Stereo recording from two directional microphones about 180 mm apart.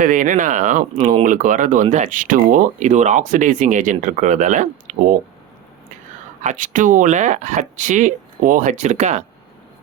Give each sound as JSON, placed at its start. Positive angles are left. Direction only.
{"t": 0.0, "sound": "speech", "side_deg": -45}
{"t": 6.4, "sound": "speech", "side_deg": -45}